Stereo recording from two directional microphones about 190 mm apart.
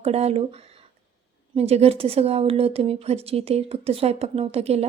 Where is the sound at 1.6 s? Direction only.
30° right (ahead or behind).